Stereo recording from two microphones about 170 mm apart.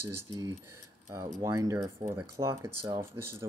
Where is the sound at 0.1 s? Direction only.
15° right (ahead or behind).